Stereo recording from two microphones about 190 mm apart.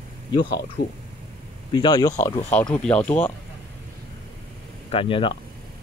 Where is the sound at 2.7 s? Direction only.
5° left (ahead or behind).